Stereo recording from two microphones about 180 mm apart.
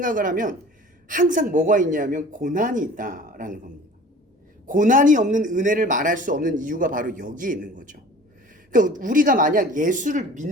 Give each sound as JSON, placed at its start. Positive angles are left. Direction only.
{"t": 0.0, "sound": "a man's voice", "side_deg": -50}
{"t": 4.6, "sound": "a man's voice", "side_deg": -45}